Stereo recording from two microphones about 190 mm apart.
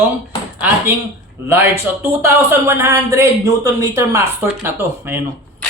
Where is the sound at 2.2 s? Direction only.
15° right (ahead or behind).